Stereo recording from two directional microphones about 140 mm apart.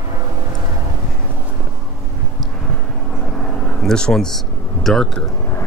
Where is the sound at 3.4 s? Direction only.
5° left (ahead or behind).